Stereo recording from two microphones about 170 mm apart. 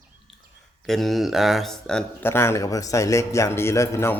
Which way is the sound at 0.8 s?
Centre (ahead or behind).